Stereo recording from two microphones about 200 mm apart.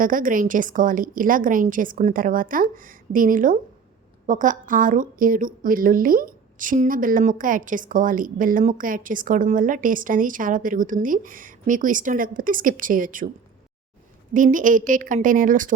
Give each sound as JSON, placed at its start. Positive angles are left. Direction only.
{"t": 0.0, "sound": "a woman's voice", "side_deg": -45}
{"t": 14.3, "sound": "a woman's voice", "side_deg": -40}